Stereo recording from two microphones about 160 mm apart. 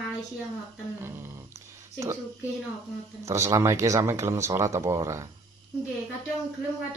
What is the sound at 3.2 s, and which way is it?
Speech, 20° right (ahead or behind).